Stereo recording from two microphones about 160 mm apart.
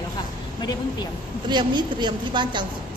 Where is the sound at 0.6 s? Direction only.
25° left (ahead or behind).